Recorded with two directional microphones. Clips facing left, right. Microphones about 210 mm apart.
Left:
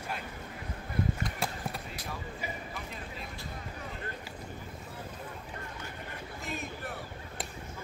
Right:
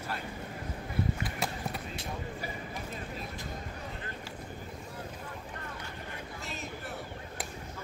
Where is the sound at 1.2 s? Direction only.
Centre (ahead or behind).